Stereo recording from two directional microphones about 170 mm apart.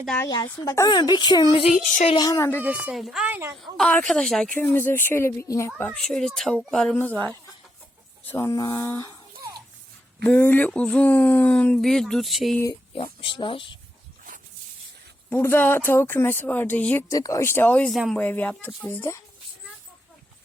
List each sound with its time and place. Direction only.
0.6 s speech: 20° left (ahead or behind)
2.6 s speech: 5° right (ahead or behind)
3.6 s a woman's voice: 5° left (ahead or behind)
5.7 s speech: 5° left (ahead or behind)
8.3 s speech: 20° left (ahead or behind)
10.2 s a woman's voice: 10° left (ahead or behind)
12.9 s speech: 30° left (ahead or behind)
15.3 s a woman's voice: 10° left (ahead or behind)